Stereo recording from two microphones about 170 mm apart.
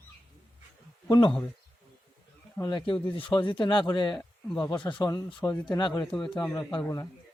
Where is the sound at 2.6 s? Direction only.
25° left (ahead or behind).